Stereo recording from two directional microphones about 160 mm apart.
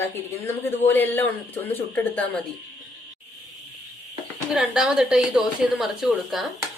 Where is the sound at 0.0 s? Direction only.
15° left (ahead or behind).